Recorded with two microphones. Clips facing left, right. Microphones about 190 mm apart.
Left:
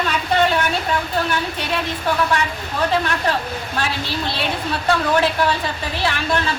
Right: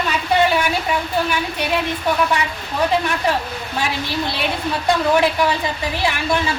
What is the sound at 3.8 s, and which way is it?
Speech, 15° right (ahead or behind).